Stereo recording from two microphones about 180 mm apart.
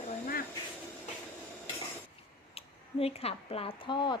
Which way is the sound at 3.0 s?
35° left (ahead or behind).